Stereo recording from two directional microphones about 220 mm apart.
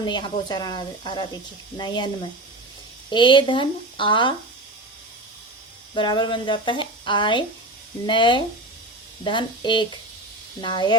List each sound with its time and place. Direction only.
0.0 s speech: 20° left (ahead or behind)
3.1 s speech: 20° left (ahead or behind)
5.9 s speech: 20° left (ahead or behind)